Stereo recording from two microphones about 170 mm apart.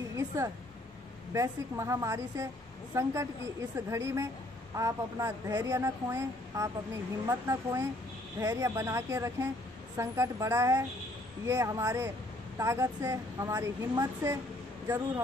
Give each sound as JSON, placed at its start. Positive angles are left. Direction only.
{"t": 1.3, "sound": "speech", "side_deg": -15}